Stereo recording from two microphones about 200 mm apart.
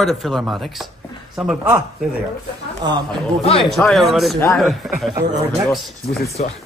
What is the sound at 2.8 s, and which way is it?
Speech, 20° right (ahead or behind).